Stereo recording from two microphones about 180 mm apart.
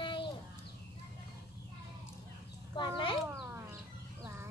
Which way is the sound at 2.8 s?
25° left (ahead or behind).